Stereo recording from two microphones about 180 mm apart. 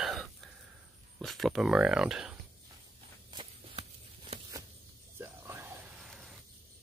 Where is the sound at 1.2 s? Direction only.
Centre (ahead or behind).